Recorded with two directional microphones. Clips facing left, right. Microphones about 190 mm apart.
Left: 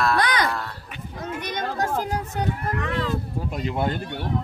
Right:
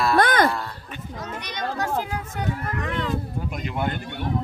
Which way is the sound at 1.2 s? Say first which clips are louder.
Left 3 dB; 50° left (ahead or behind).